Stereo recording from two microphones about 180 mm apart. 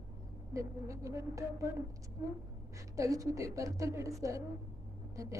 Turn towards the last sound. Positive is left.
turn(degrees=-15)  # may be behind; listen again after turning